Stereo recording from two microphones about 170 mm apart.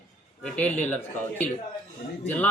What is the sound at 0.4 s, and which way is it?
Speech, 5° left (ahead or behind).